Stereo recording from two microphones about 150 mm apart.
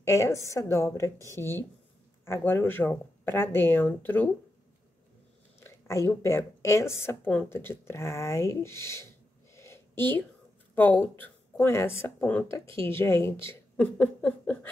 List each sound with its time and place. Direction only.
0.0 s a woman's voice: 20° left (ahead or behind)
5.6 s speech: 20° left (ahead or behind)